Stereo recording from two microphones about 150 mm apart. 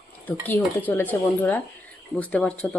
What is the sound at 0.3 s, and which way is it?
Speech, 10° left (ahead or behind).